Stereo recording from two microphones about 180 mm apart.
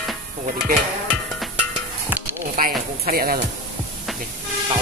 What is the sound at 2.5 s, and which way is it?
Sizzle, 55° right (ahead or behind).